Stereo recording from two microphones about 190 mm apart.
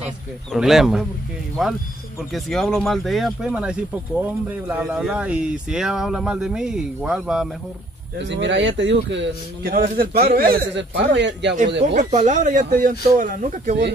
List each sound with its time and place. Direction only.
0.0 s speech: 5° right (ahead or behind)
8.2 s speech: 70° right (ahead or behind)
11.9 s speech: 40° right (ahead or behind)